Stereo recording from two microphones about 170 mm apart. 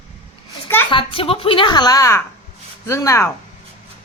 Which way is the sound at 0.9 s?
30° left (ahead or behind).